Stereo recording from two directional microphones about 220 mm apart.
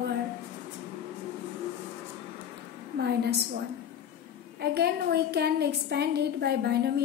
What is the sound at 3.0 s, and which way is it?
Speech, 45° right (ahead or behind).